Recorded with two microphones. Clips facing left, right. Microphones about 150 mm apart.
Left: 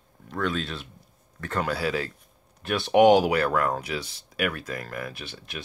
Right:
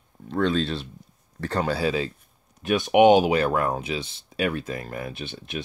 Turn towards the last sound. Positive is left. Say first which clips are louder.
# right 5 dB
turn(degrees=-25)  # may be behind; listen again after turning